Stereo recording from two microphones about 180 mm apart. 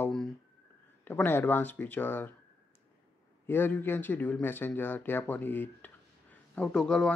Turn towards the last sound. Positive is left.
turn(degrees=5)  # may be behind; listen again after turning